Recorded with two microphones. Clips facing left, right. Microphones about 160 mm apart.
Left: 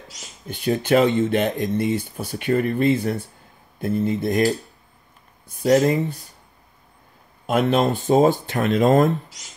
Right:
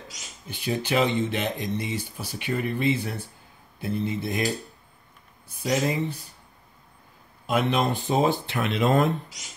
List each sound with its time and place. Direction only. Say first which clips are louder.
0.5 s speech: left 8 dB; 50° left (ahead or behind)
5.5 s speech: left 8 dB; 50° left (ahead or behind)
7.4 s speech: left 5 dB; 45° left (ahead or behind)